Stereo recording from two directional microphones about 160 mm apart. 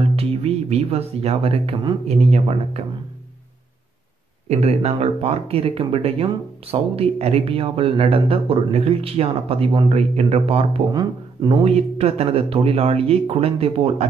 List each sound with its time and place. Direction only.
0.0 s speech: 40° right (ahead or behind)
4.5 s speech: 40° right (ahead or behind)
10.9 s speech: 25° right (ahead or behind)
11.6 s speech: 40° right (ahead or behind)